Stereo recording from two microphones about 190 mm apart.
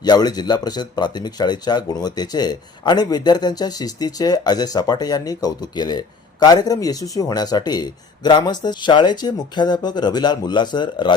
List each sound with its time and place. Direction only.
0.0 s speech: 20° left (ahead or behind)